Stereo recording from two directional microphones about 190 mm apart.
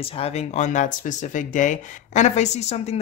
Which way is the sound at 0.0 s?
30° left (ahead or behind).